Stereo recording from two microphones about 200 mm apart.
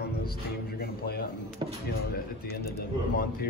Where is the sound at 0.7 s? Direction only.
50° left (ahead or behind).